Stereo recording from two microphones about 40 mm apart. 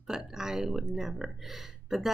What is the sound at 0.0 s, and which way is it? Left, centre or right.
Speech, centre.